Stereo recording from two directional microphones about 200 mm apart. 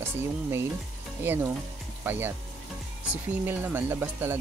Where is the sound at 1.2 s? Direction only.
10° right (ahead or behind).